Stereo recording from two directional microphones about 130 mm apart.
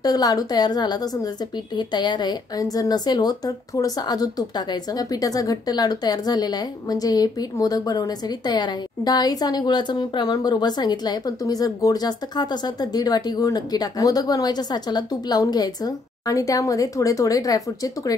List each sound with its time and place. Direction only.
0.0 s a woman's voice: 30° left (ahead or behind)